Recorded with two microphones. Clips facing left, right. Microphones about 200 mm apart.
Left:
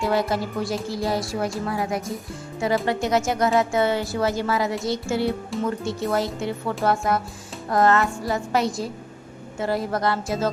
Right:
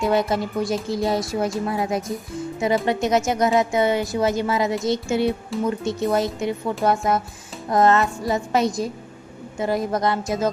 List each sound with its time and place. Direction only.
0.0 s a woman's voice: 20° right (ahead or behind)